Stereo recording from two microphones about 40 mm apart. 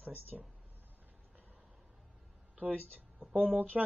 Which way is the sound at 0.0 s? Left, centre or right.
Right.